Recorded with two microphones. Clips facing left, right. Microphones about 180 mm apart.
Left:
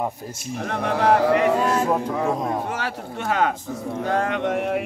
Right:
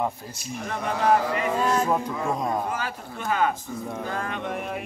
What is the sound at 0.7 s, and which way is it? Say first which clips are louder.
Speech: left 3 dB; 65° left (ahead or behind).